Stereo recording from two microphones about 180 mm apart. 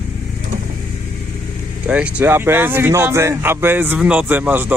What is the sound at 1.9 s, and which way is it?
Speech, 5° right (ahead or behind).